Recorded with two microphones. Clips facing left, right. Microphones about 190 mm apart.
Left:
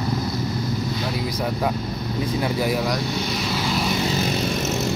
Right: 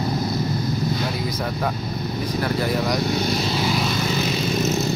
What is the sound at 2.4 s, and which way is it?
Speech, 10° left (ahead or behind).